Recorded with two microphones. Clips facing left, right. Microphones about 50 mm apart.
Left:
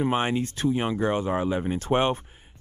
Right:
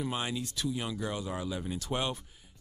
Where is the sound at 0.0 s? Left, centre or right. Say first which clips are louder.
Left 10 dB; left.